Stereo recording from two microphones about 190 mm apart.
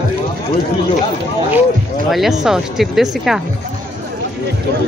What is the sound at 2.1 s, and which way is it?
Speech, centre (ahead or behind).